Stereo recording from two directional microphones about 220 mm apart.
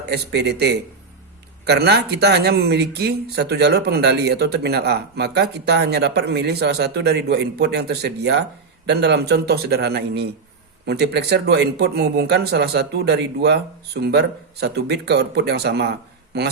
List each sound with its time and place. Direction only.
0.0 s speech: 50° right (ahead or behind)